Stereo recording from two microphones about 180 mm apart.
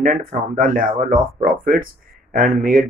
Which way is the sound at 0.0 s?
50° right (ahead or behind).